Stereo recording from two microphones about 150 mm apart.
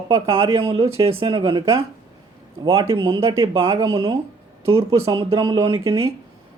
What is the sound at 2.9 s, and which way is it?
Speech, 35° right (ahead or behind).